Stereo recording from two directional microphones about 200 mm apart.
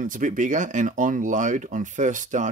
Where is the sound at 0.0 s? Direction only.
40° right (ahead or behind).